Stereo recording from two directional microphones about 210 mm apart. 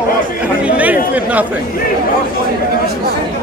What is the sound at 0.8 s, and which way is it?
Speech, 5° right (ahead or behind).